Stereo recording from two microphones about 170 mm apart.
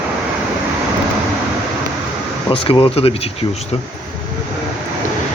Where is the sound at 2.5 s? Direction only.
30° left (ahead or behind).